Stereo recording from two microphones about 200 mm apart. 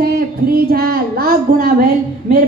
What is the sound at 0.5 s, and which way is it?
Child singing, 50° right (ahead or behind).